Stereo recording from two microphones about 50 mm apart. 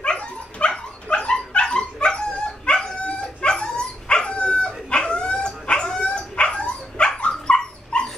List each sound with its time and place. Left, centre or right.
0.0 s dog: left